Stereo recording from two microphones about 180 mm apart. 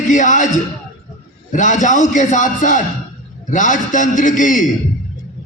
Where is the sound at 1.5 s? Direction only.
45° left (ahead or behind).